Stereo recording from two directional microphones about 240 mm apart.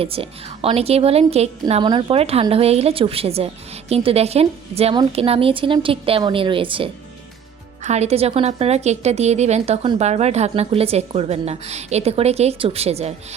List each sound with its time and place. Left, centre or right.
0.0 s a woman's voice: right